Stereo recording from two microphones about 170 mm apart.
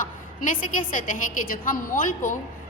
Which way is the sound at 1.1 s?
55° left (ahead or behind).